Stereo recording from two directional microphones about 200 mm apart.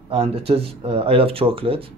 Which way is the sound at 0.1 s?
30° right (ahead or behind).